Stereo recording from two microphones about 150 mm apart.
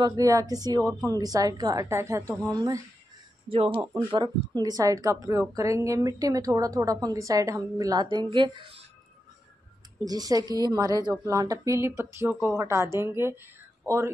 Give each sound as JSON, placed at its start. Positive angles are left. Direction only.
{"t": 0.0, "sound": "speech", "side_deg": -25}
{"t": 3.4, "sound": "speech", "side_deg": -35}
{"t": 10.0, "sound": "speech", "side_deg": -25}